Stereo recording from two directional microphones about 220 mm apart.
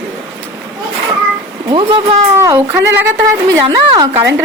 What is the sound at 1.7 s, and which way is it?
Speech, 25° right (ahead or behind).